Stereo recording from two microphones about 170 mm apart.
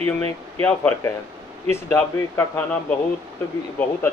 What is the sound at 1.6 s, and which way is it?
Speech, 15° left (ahead or behind).